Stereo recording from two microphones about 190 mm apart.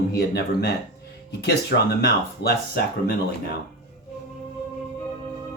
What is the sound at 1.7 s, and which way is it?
Speech, 50° left (ahead or behind).